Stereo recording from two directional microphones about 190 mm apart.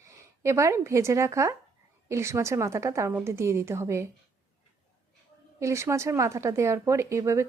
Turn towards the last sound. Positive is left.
turn(degrees=-15)  # may be behind; listen again after turning